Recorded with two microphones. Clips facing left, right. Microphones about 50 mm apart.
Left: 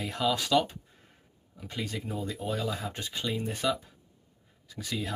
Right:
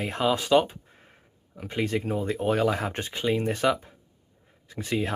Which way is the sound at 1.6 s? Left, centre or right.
Right.